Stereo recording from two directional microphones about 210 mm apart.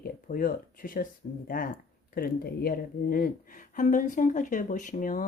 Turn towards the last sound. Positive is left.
turn(degrees=40)  # may be behind; listen again after turning